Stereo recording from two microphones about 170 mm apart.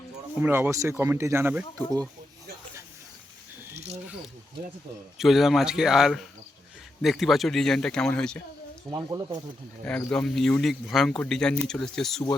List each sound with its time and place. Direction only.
0.3 s speech: 10° right (ahead or behind)
5.1 s speech: centre (ahead or behind)
8.9 s speech: 25° right (ahead or behind)
9.8 s speech: 5° left (ahead or behind)